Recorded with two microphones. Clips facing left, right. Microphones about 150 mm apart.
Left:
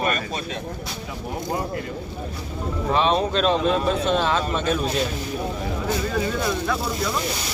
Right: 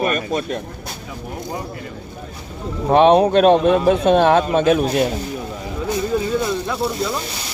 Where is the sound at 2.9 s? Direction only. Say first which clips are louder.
Right 10 dB; 60° right (ahead or behind).